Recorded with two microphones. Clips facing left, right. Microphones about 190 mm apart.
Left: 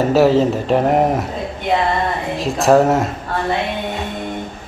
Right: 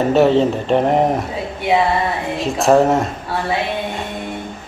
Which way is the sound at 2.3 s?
Centre (ahead or behind).